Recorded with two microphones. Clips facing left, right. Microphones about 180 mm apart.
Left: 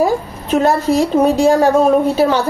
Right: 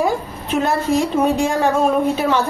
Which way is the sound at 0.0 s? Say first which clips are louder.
Left 4 dB; 40° left (ahead or behind).